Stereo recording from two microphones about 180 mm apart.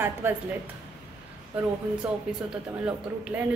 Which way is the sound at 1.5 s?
5° right (ahead or behind).